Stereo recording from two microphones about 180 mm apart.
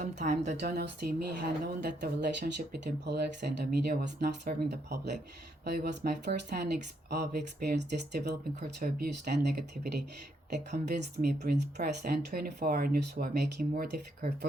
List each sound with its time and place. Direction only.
0.0 s speech: 40° right (ahead or behind)
0.6 s speech: 60° right (ahead or behind)
2.8 s speech: 70° right (ahead or behind)
8.8 s speech: 55° right (ahead or behind)